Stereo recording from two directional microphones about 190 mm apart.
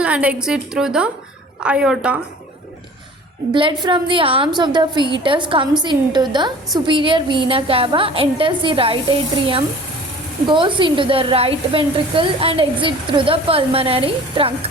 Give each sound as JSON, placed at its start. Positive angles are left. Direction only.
{"t": 0.0, "sound": "a woman's voice", "side_deg": -5}
{"t": 3.5, "sound": "a woman's voice", "side_deg": -25}
{"t": 10.5, "sound": "a woman's voice", "side_deg": -25}